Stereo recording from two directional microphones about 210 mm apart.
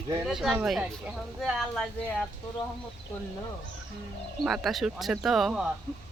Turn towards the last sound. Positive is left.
turn(degrees=0)  # may be behind; listen again after turning